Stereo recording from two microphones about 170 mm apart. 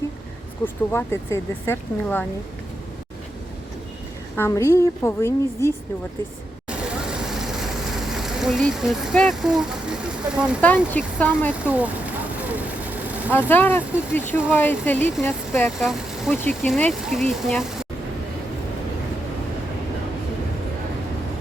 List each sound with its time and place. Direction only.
0.6 s speech: 15° left (ahead or behind)
4.4 s speech: 15° left (ahead or behind)
6.7 s vehicle: 5° right (ahead or behind)
10.9 s speech: 10° left (ahead or behind)
11.6 s speech: 10° right (ahead or behind)
12.5 s vehicle: 10° right (ahead or behind)
13.5 s speech: 10° left (ahead or behind)
15.8 s speech: centre (ahead or behind)